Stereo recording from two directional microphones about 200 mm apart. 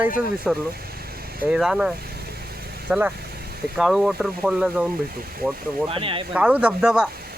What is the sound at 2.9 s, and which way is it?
Speech, 5° right (ahead or behind).